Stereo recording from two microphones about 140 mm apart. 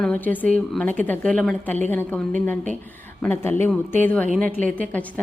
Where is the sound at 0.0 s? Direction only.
10° left (ahead or behind).